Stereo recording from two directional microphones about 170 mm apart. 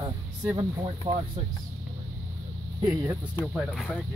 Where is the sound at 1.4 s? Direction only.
40° right (ahead or behind).